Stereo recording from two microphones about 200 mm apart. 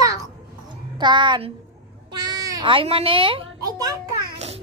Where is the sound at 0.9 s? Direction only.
20° right (ahead or behind).